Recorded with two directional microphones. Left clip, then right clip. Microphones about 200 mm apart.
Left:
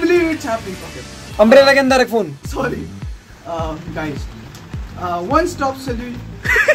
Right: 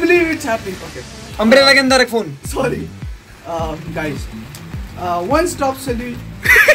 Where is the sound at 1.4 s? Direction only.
35° left (ahead or behind).